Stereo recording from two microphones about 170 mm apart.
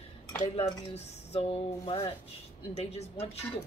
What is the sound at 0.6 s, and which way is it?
Speech, 40° left (ahead or behind).